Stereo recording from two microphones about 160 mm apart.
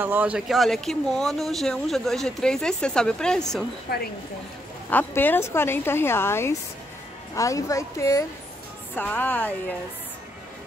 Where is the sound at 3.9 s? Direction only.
85° left.